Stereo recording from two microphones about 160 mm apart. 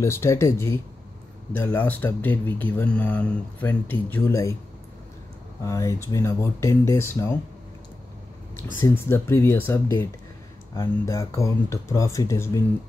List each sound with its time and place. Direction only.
0.0 s speech: 15° left (ahead or behind)
5.6 s speech: 20° left (ahead or behind)
8.7 s speech: 15° left (ahead or behind)